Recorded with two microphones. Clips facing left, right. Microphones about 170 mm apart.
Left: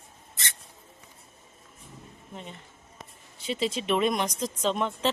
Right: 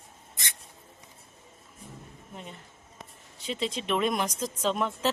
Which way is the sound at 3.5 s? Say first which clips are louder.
Left 3 dB; 5° left (ahead or behind).